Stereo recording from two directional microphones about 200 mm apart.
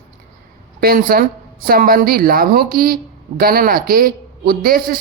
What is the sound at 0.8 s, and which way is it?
A man's voice, 50° right (ahead or behind).